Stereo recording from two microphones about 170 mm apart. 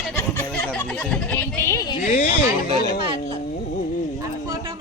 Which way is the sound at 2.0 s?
50° left (ahead or behind).